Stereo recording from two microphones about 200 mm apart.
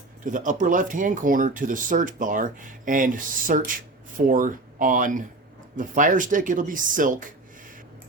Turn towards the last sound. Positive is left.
turn(degrees=-40)  # may be behind; listen again after turning